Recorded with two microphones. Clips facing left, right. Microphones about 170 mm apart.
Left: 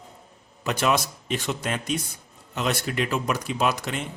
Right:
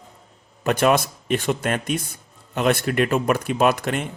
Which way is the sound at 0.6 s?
55° right (ahead or behind).